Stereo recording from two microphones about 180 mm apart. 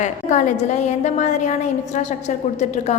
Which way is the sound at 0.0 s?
40° left (ahead or behind).